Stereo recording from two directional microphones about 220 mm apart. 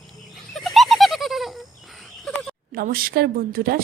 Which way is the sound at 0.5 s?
Centre (ahead or behind).